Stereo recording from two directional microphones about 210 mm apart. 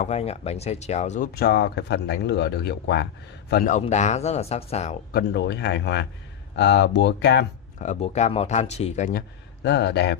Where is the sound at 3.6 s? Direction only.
35° left (ahead or behind).